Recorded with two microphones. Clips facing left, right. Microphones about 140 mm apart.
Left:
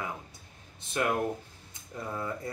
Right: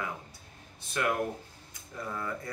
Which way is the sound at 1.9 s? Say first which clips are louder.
Left 1 dB; 25° left (ahead or behind).